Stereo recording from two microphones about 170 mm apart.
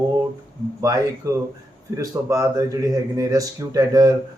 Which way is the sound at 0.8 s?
20° right (ahead or behind).